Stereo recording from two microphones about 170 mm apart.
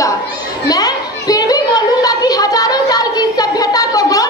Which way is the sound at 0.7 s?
20° left (ahead or behind).